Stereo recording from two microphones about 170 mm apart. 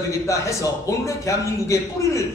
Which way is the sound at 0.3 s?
20° left (ahead or behind).